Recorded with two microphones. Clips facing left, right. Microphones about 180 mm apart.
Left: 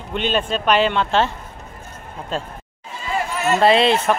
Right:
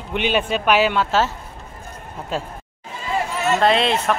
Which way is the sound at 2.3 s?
10° right (ahead or behind).